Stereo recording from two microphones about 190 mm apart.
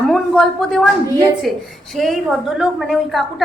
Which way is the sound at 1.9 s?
Centre (ahead or behind).